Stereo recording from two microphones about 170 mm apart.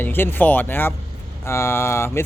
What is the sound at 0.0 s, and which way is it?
Speech, 10° left (ahead or behind).